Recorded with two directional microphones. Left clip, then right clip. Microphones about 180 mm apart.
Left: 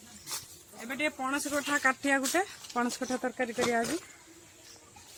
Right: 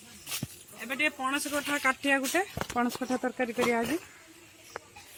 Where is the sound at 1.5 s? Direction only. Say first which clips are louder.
Left 2 dB; 30° left (ahead or behind).